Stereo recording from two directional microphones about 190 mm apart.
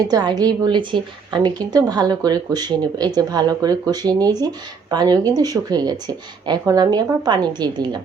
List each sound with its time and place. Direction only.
0.1 s speech: 20° right (ahead or behind)